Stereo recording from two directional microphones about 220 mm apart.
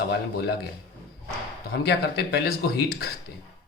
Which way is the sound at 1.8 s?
50° left (ahead or behind).